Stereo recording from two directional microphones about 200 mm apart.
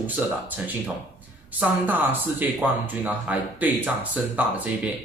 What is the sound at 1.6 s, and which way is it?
Speech, 10° right (ahead or behind).